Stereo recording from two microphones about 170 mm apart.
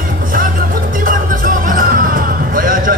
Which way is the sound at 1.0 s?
55° right (ahead or behind).